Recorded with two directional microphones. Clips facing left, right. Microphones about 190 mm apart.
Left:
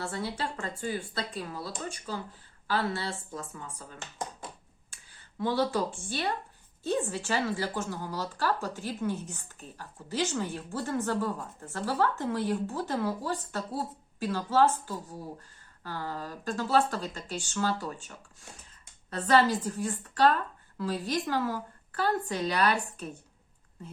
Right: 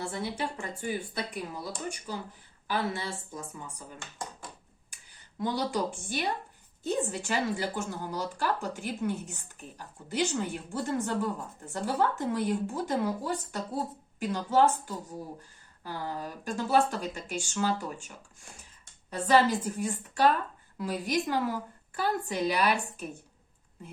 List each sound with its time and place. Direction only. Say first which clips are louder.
0.0 s a woman's voice: even; 15° right (ahead or behind)
4.0 s a sound: left 4 dB; 20° left (ahead or behind)
5.4 s a woman's voice: left 2 dB; 15° right (ahead or behind)
19.1 s a woman's voice: even; 10° right (ahead or behind)